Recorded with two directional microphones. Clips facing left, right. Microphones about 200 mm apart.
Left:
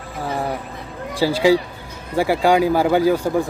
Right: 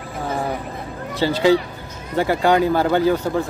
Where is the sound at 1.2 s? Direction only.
10° left (ahead or behind).